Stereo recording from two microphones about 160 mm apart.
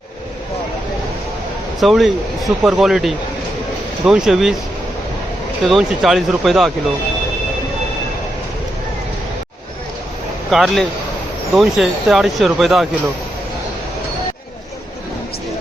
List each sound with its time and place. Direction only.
1.8 s speech: centre (ahead or behind)
5.6 s speech: centre (ahead or behind)
10.5 s speech: centre (ahead or behind)